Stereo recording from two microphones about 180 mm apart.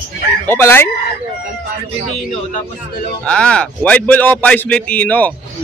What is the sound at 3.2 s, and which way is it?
Speech, 5° left (ahead or behind).